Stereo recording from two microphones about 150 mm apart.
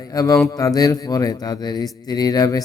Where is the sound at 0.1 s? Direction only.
20° left (ahead or behind).